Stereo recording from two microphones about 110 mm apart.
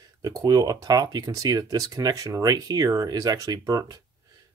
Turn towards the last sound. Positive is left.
turn(degrees=-35)  # may be behind; listen again after turning